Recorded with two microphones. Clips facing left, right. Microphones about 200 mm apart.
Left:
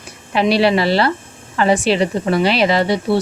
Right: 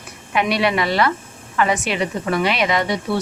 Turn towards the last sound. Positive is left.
turn(degrees=30)  # may be behind; listen again after turning